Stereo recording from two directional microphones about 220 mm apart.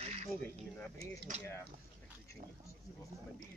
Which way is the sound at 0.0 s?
30° right (ahead or behind).